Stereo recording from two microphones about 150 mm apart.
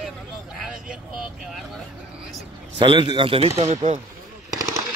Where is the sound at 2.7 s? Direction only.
35° right (ahead or behind).